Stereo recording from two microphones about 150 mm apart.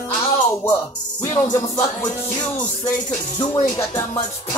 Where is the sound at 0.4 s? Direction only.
20° left (ahead or behind).